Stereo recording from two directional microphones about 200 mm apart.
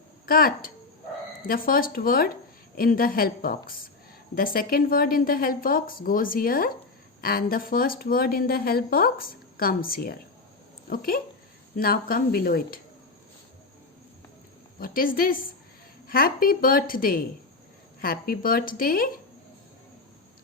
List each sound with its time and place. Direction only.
0.3 s speech: 45° left (ahead or behind)
14.8 s speech: 45° left (ahead or behind)